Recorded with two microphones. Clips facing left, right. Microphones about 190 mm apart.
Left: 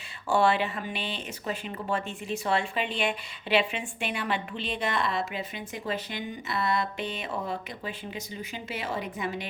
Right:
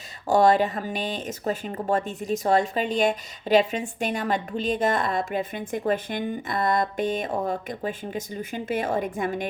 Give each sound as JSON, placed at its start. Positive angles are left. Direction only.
{"t": 0.3, "sound": "speech", "side_deg": -40}